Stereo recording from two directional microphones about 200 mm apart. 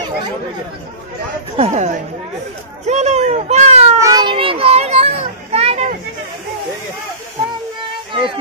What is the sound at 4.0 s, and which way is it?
A child's voice, 20° right (ahead or behind).